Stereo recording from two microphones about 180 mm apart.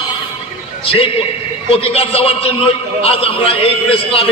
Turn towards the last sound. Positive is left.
turn(degrees=30)  # may be behind; listen again after turning